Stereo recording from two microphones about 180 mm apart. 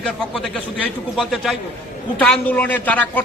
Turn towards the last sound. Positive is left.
turn(degrees=10)  # may be behind; listen again after turning